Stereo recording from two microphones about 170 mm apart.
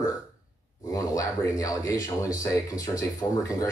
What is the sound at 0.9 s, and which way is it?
Speech, 20° left (ahead or behind).